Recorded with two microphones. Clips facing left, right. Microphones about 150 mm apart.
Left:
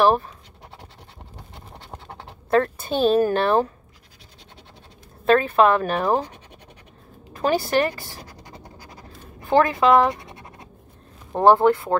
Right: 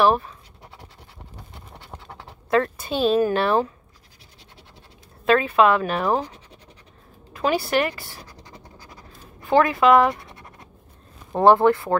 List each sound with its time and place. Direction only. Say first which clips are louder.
0.0 s a woman's voice: left 1 dB; 35° left (ahead or behind)
2.5 s a woman's voice: left 1 dB; 40° left (ahead or behind)
5.3 s speech: left 1 dB; 45° left (ahead or behind)
5.9 s speech: left 1 dB; 25° left (ahead or behind)
7.3 s a woman's voice: left 1 dB; 40° left (ahead or behind)
8.3 s scratch: left 2 dB; 35° left (ahead or behind)
9.5 s speech: even; 30° left (ahead or behind)